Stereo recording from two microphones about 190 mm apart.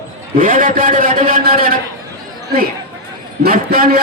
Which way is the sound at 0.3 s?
45° right (ahead or behind).